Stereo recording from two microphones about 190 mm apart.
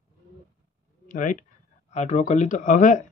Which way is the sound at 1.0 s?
45° left (ahead or behind).